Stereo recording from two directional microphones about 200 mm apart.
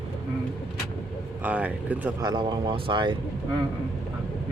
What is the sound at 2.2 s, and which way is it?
Speech, 20° right (ahead or behind).